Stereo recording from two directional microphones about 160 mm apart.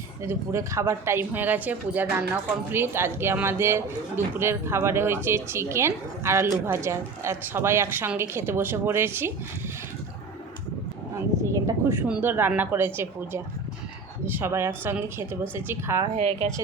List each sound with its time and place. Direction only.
0.2 s speech: 20° right (ahead or behind)
11.4 s speech: 15° right (ahead or behind)
16.1 s a woman's voice: 45° right (ahead or behind)